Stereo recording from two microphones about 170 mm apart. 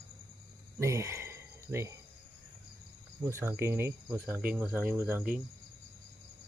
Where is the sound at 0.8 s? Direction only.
15° right (ahead or behind).